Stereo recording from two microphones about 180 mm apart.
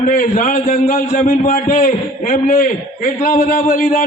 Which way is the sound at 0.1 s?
45° left (ahead or behind).